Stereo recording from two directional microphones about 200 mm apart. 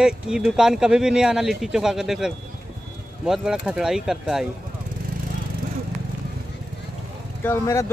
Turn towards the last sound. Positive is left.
turn(degrees=15)  # may be behind; listen again after turning